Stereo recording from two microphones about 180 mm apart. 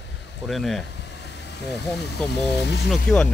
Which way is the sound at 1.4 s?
70° left (ahead or behind).